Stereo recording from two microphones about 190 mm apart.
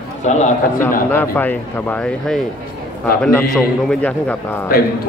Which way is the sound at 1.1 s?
10° left (ahead or behind).